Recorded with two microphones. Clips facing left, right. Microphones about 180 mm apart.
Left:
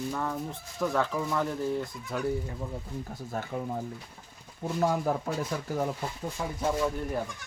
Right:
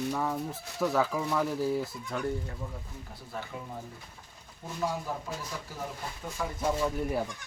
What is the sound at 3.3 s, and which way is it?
Speech, 45° left (ahead or behind).